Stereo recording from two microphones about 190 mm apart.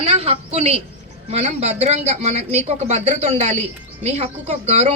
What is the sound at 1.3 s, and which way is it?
Speech, 35° right (ahead or behind).